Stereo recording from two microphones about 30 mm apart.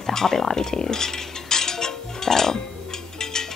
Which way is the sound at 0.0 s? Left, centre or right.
Centre.